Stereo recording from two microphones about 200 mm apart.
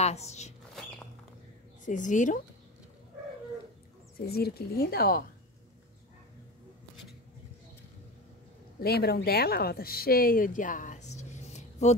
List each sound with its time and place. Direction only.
0.0 s speech: 35° left (ahead or behind)
1.9 s speech: 40° left (ahead or behind)
4.3 s speech: 50° left (ahead or behind)
8.8 s speech: 50° left (ahead or behind); by 11.9 s 35° left (ahead or behind)